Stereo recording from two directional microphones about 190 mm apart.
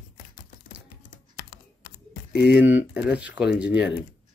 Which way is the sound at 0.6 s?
45° left (ahead or behind).